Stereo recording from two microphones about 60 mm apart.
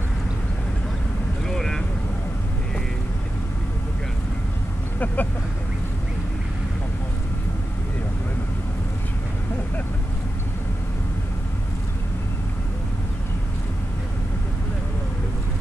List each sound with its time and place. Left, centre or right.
1.5 s vehicle: centre
4.9 s speech: left